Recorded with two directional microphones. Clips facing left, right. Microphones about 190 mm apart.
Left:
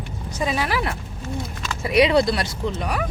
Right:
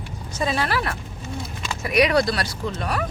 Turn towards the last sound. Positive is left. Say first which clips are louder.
# left 1 dB
turn(degrees=15)  # may be behind; listen again after turning